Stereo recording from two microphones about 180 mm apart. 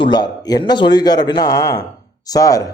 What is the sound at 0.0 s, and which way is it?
Speech, 25° left (ahead or behind).